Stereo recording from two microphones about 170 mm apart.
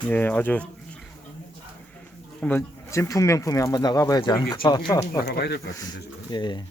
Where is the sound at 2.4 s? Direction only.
15° left (ahead or behind).